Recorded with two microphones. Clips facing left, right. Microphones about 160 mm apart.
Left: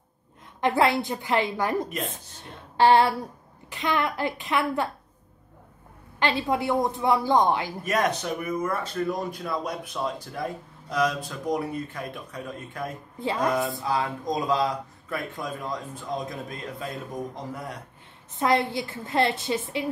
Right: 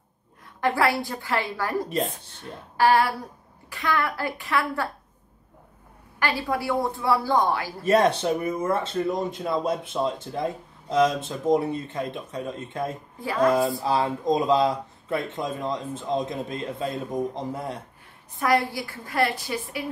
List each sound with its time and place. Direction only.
0.6 s a woman's voice: 20° left (ahead or behind)
6.1 s a woman's voice: 20° left (ahead or behind)
7.8 s speech: 30° right (ahead or behind)
13.2 s a woman's voice: 25° left (ahead or behind)
13.5 s speech: 25° right (ahead or behind)
18.3 s a woman's voice: 20° left (ahead or behind)